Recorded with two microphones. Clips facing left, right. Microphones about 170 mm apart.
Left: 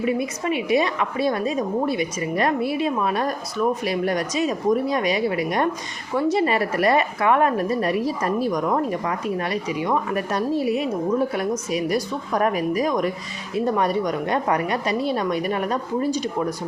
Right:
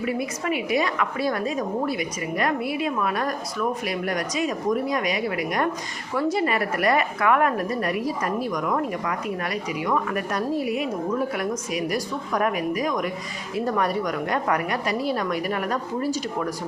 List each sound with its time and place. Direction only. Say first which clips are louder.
0.0 s a woman's voice: left 3 dB; 25° left (ahead or behind)
13.7 s a woman's voice: left 3 dB; 25° left (ahead or behind)